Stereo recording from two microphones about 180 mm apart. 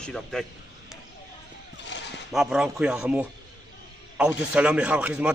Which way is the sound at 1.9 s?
85° left.